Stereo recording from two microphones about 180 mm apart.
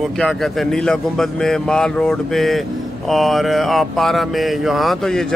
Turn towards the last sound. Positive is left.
turn(degrees=0)  # may be behind; listen again after turning